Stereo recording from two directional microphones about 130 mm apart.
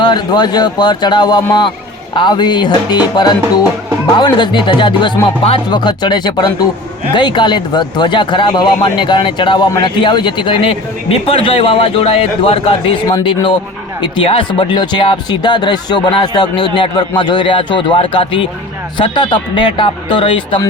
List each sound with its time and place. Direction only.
0.0 s speech: 35° left (ahead or behind)
14.0 s speech: 40° left (ahead or behind)